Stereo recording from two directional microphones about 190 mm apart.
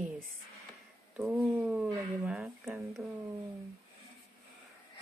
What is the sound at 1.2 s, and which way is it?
Speech, centre (ahead or behind).